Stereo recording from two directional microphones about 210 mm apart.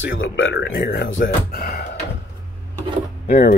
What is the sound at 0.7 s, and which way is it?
Speech, 45° left (ahead or behind).